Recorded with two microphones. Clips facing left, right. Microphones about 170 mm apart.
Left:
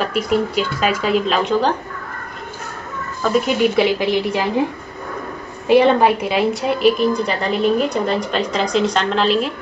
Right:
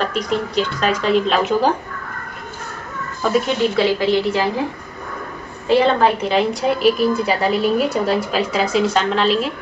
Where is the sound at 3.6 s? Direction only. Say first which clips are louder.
Left 1 dB; 15° left (ahead or behind).